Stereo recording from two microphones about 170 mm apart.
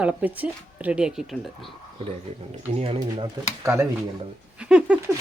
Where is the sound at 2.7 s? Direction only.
35° right (ahead or behind).